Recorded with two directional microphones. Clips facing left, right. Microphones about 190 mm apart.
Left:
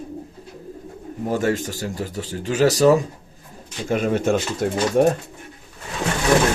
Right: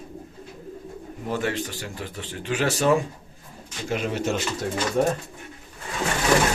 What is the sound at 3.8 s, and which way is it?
Speech, 50° left (ahead or behind).